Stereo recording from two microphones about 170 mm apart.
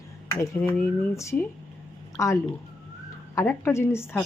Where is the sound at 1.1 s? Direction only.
15° left (ahead or behind).